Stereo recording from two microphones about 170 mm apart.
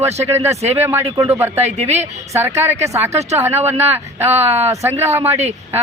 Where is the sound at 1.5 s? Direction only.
40° right (ahead or behind).